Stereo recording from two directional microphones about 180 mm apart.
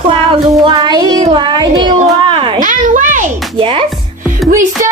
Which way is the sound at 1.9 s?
35° right (ahead or behind).